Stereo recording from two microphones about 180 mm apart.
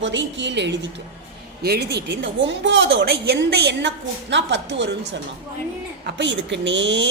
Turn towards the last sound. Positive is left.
turn(degrees=-80)